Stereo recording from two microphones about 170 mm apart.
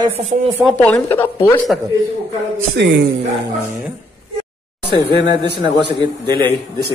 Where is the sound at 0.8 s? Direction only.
10° left (ahead or behind).